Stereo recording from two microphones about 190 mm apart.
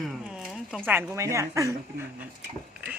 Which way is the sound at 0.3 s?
5° right (ahead or behind).